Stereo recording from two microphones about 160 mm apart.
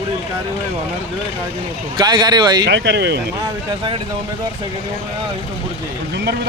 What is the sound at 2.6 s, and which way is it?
Speech, 90° right.